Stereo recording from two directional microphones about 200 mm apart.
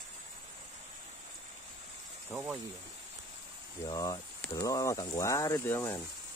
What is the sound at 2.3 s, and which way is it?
Speech, 5° right (ahead or behind).